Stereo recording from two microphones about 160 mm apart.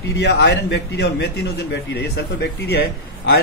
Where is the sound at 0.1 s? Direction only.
90° left.